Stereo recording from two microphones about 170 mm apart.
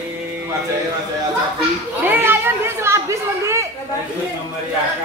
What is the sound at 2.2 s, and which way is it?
Children playing, 15° right (ahead or behind).